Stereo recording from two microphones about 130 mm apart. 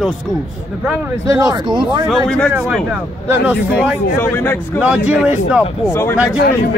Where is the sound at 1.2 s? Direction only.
30° right (ahead or behind).